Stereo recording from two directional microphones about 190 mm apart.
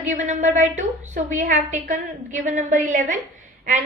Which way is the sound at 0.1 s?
40° right (ahead or behind).